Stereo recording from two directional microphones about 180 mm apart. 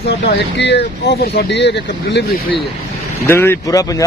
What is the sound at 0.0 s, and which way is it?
Speech, 75° left (ahead or behind).